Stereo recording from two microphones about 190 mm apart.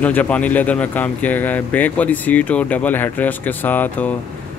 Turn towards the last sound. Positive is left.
turn(degrees=10)  # may be behind; listen again after turning